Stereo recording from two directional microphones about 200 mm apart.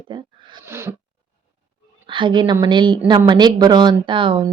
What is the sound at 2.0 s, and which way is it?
A woman's voice, 25° right (ahead or behind).